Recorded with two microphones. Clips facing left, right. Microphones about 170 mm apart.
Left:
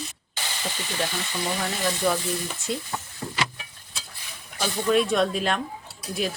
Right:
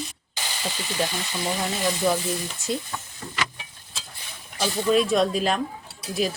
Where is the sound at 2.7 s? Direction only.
40° right (ahead or behind).